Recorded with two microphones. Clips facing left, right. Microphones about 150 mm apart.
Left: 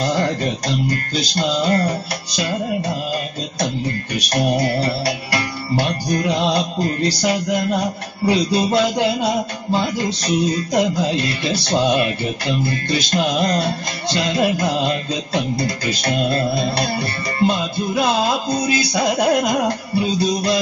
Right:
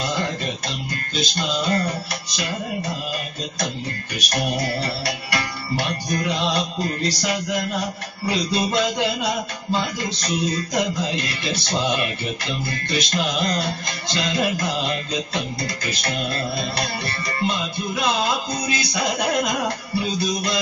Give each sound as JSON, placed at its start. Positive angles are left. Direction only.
{"t": 0.0, "sound": "music", "side_deg": 40}
{"t": 4.3, "sound": "music", "side_deg": 35}